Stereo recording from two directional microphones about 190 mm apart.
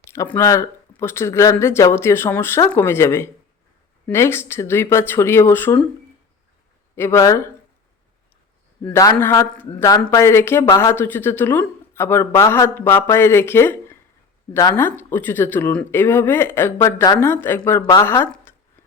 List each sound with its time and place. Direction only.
0.1 s speech: 15° left (ahead or behind)
6.9 s speech: 15° left (ahead or behind)
8.9 s speech: 15° left (ahead or behind)